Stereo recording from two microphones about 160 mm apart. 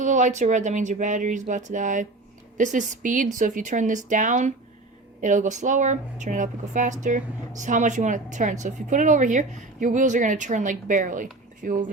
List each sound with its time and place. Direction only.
0.0 s a woman's voice: 50° right (ahead or behind)